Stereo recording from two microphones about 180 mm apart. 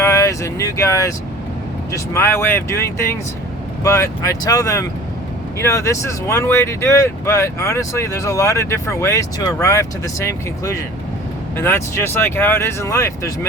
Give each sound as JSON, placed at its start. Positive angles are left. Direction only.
{"t": 0.0, "sound": "speech", "side_deg": 15}
{"t": 2.1, "sound": "speech", "side_deg": 15}